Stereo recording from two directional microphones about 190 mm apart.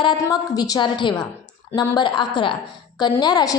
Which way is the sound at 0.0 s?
25° left (ahead or behind).